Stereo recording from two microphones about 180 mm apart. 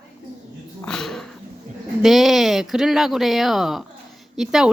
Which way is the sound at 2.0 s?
Centre (ahead or behind).